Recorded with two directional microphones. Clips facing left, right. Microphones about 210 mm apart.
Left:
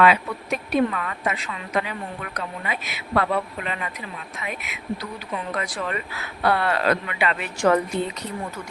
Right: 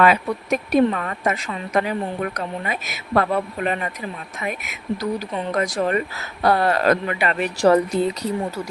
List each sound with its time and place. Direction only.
0.0 s a woman's voice: 45° right (ahead or behind)